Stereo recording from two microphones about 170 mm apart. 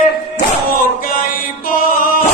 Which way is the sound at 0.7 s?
55° left (ahead or behind).